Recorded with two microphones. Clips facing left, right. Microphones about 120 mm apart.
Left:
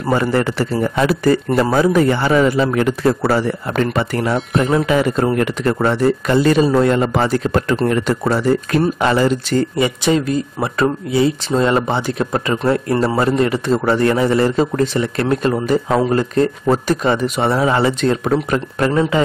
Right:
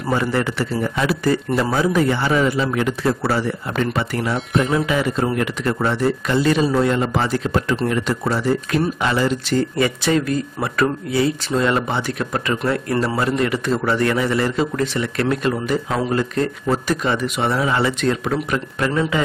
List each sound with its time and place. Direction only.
0.1 s speech: 50° left (ahead or behind)
9.8 s speech: 20° left (ahead or behind)